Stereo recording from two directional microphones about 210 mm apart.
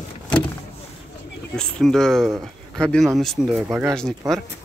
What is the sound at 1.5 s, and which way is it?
A man's voice, 5° left (ahead or behind).